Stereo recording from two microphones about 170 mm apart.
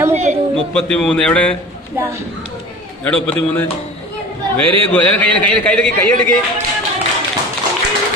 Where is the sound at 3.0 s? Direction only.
10° left (ahead or behind).